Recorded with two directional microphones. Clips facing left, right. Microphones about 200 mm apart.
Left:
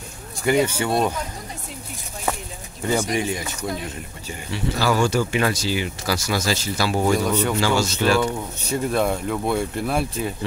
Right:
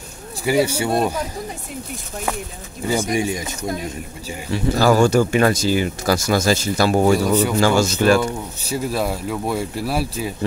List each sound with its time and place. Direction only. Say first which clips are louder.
0.4 s speech: right 1 dB; 10° right (ahead or behind)
2.9 s speech: right 2 dB; 10° right (ahead or behind)
4.5 s speech: right 6 dB; 45° right (ahead or behind)
8.2 s speech: even; 5° right (ahead or behind)